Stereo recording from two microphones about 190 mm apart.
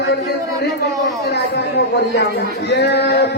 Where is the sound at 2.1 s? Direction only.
60° left (ahead or behind).